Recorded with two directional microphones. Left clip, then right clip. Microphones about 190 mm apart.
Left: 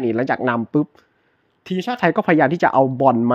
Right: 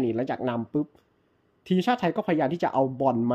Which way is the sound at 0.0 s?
15° left (ahead or behind).